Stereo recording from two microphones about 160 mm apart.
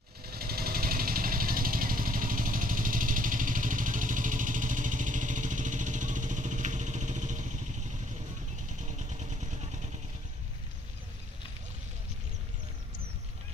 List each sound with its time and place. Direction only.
0.3 s vehicle: 70° right (ahead or behind); by 9.7 s 45° right (ahead or behind)